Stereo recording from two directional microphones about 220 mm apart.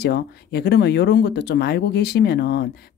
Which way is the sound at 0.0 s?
45° left (ahead or behind).